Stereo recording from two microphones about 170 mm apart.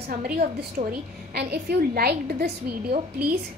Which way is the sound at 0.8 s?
50° right (ahead or behind).